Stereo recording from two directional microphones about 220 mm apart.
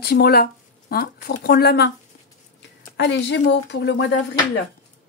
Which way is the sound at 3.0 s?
55° left (ahead or behind).